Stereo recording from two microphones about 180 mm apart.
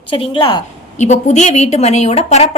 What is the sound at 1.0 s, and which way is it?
Speech, 40° left (ahead or behind).